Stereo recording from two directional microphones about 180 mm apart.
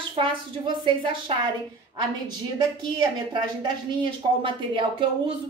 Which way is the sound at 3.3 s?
25° right (ahead or behind).